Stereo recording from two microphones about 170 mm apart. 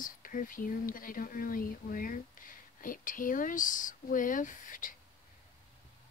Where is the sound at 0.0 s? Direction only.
50° left (ahead or behind).